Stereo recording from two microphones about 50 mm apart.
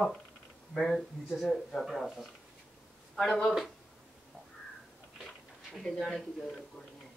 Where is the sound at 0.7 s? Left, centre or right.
Centre.